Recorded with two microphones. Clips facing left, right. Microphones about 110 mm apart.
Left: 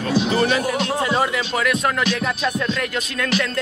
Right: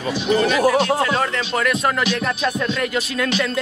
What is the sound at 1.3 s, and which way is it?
Music, centre (ahead or behind).